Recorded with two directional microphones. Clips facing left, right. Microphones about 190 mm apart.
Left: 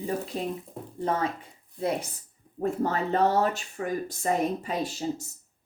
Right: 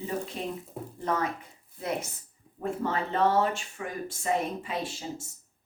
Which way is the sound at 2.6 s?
40° left (ahead or behind).